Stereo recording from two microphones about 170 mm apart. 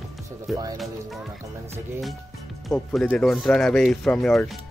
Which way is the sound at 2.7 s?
5° left (ahead or behind).